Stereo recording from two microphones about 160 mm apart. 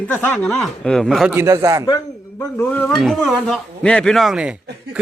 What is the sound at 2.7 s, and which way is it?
Speech, 10° left (ahead or behind).